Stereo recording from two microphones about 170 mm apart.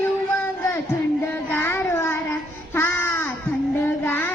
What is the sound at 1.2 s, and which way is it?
Child singing, 10° left (ahead or behind).